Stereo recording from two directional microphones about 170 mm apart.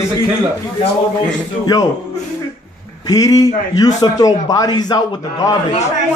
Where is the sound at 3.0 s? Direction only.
20° left (ahead or behind).